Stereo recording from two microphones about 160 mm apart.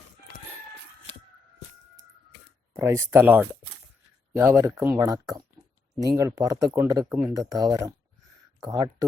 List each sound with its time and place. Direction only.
2.7 s speech: 20° right (ahead or behind)
7.3 s speech: 20° right (ahead or behind)